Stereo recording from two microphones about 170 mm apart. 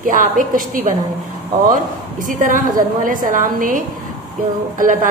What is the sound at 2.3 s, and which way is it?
A woman's voice, 50° right (ahead or behind).